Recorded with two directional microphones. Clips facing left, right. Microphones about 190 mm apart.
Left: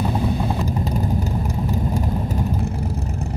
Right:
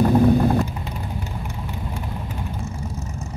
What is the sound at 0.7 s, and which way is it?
Vehicle, 40° left (ahead or behind).